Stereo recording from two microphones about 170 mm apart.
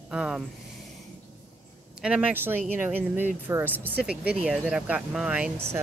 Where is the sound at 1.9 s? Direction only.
5° right (ahead or behind).